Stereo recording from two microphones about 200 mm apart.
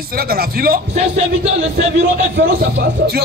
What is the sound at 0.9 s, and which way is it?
Speech, 30° right (ahead or behind).